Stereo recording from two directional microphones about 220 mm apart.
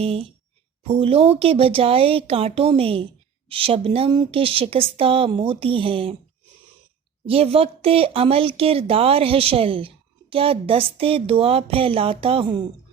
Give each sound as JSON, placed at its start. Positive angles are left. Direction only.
{"t": 0.0, "sound": "speech", "side_deg": -25}
{"t": 7.3, "sound": "speech", "side_deg": -25}